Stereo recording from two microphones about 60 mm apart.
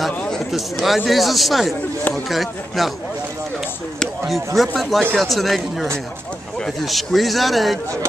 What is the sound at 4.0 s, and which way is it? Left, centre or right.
Speech, centre.